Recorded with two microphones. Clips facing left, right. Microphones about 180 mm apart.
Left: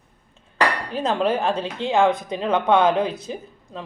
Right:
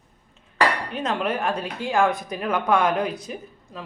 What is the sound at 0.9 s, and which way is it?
Speech, 30° left (ahead or behind).